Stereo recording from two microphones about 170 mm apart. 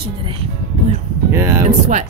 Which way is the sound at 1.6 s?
45° right (ahead or behind).